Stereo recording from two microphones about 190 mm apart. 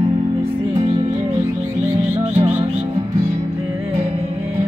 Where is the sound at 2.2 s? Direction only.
35° right (ahead or behind).